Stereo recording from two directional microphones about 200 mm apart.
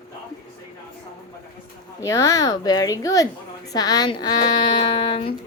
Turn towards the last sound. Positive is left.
turn(degrees=25)  # may be behind; listen again after turning